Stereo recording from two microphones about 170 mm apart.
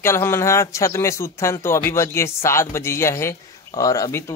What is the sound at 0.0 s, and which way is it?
Speech, 15° left (ahead or behind).